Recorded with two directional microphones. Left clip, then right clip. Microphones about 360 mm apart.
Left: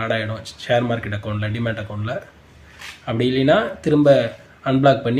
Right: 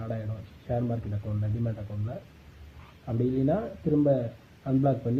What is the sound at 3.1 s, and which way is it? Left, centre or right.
Speech, left.